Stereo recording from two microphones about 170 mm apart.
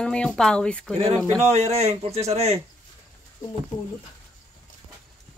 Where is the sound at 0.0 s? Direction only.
5° left (ahead or behind).